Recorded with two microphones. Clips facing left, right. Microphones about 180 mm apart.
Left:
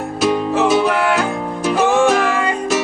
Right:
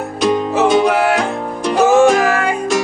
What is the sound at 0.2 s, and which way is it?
Music, 5° left (ahead or behind).